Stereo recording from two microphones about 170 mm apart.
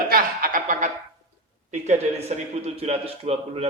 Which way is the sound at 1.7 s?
40° right (ahead or behind).